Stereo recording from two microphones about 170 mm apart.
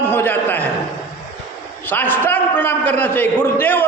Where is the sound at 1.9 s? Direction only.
10° left (ahead or behind).